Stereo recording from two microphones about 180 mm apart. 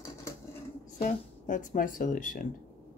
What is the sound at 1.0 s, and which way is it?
Speech, 45° left (ahead or behind).